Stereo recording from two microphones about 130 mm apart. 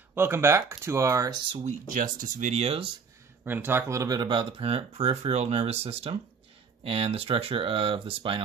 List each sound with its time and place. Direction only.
0.1 s speech: 20° right (ahead or behind)
1.5 s speech: 50° right (ahead or behind)
1.9 s speech: 90° right; by 2.9 s 50° right (ahead or behind)
3.4 s speech: 15° right (ahead or behind); by 8.5 s 45° right (ahead or behind)